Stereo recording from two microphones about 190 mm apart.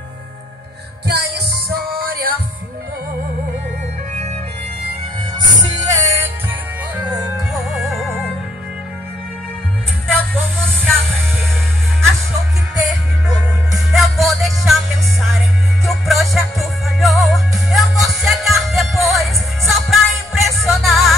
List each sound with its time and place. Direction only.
1.0 s music: 60° right (ahead or behind)
5.9 s music: 15° right (ahead or behind)
7.0 s music: 5° right (ahead or behind)
10.3 s music: 5° left (ahead or behind)
12.7 s music: centre (ahead or behind)
15.8 s music: centre (ahead or behind)